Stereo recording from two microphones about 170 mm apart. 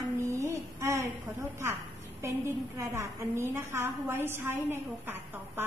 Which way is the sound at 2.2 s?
15° right (ahead or behind).